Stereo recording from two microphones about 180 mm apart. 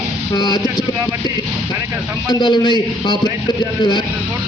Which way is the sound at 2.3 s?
25° left (ahead or behind).